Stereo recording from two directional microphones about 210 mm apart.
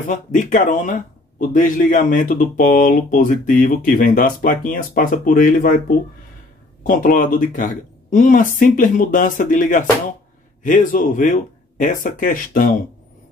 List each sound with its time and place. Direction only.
0.1 s speech: 35° left (ahead or behind)